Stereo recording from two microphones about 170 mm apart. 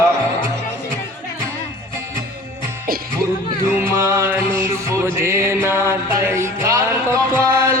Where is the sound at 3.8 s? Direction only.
15° right (ahead or behind).